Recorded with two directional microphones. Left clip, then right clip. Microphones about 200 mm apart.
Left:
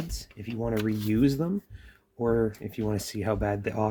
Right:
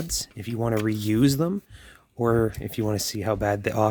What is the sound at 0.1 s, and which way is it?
Speech, 45° right (ahead or behind).